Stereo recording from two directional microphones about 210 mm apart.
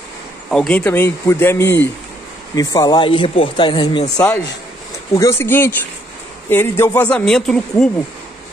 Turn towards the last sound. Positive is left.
turn(degrees=0)  # may be behind; listen again after turning